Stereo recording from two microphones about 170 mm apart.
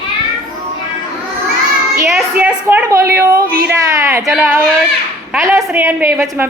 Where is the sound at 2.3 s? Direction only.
10° right (ahead or behind).